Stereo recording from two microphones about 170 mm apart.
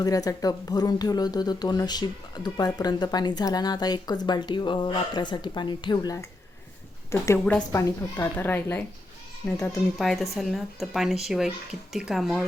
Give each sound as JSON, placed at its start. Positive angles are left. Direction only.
{"t": 0.0, "sound": "speech", "side_deg": 20}
{"t": 7.8, "sound": "speech", "side_deg": 20}